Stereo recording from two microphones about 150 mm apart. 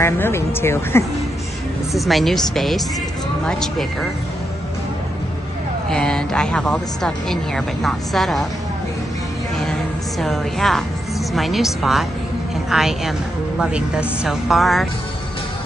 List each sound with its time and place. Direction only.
0.0 s speech: 15° left (ahead or behind)
2.0 s speech: centre (ahead or behind)
5.9 s speech: 5° left (ahead or behind)
9.7 s music: centre (ahead or behind)
11.3 s speech: centre (ahead or behind)